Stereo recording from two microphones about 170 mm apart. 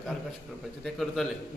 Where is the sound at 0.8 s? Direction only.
Centre (ahead or behind).